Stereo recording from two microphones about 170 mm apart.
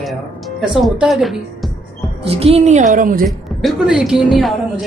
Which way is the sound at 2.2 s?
35° right (ahead or behind).